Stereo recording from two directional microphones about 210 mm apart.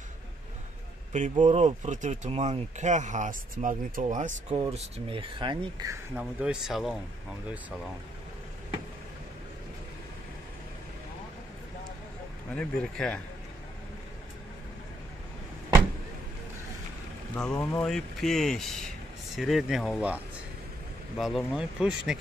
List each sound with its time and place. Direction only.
1.4 s speech: 30° right (ahead or behind)
6.1 s speech: 5° right (ahead or behind)
12.5 s speech: 5° left (ahead or behind)
17.4 s speech: 5° left (ahead or behind)
21.2 s speech: centre (ahead or behind)